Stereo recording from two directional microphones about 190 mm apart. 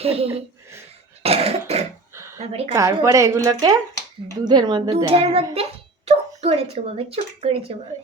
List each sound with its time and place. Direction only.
0.0 s speech: 30° right (ahead or behind)
1.2 s cough: 30° right (ahead or behind)
2.1 s a sound: 15° right (ahead or behind)
2.4 s speech: 35° right (ahead or behind)
2.7 s speech: 15° right (ahead or behind)
7.9 s speech: 15° right (ahead or behind)